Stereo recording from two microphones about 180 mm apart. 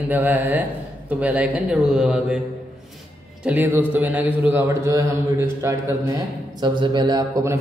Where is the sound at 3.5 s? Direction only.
10° right (ahead or behind).